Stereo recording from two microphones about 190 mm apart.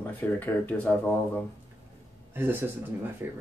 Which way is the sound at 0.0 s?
10° left (ahead or behind).